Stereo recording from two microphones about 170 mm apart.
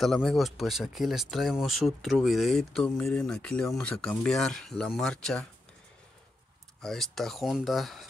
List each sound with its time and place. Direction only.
0.0 s speech: centre (ahead or behind)
6.8 s speech: centre (ahead or behind)